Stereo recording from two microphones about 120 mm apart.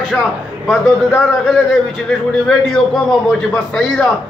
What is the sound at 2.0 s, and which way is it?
A man's voice, 5° left (ahead or behind).